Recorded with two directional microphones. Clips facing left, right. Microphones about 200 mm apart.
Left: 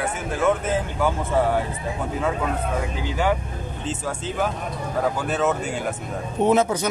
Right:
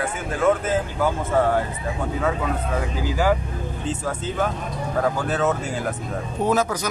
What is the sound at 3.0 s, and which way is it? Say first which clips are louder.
Speech: right 2 dB; 5° right (ahead or behind).